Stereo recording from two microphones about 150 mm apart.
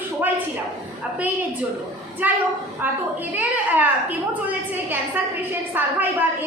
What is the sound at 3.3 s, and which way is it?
A woman's voice, 10° right (ahead or behind).